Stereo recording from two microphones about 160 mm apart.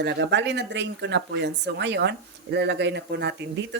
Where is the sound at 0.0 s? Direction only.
90° right.